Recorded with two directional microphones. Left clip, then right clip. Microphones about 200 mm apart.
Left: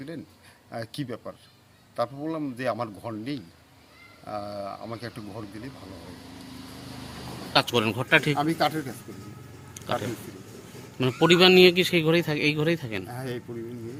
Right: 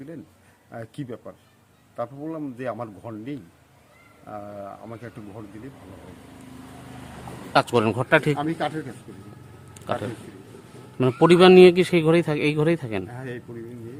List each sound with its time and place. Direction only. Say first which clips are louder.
0.7 s a man's voice: left 1 dB; centre (ahead or behind)
7.5 s a man's voice: right 3 dB; 30° right (ahead or behind)
8.4 s a man's voice: left 2 dB; centre (ahead or behind)
9.8 s a man's voice: right 1 dB; 25° right (ahead or behind)
13.1 s a man's voice: left 1 dB; centre (ahead or behind)